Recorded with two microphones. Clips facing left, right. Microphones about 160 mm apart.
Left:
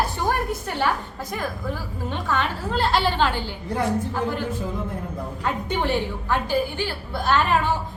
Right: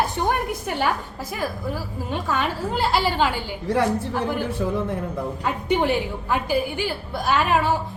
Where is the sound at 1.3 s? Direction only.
5° right (ahead or behind).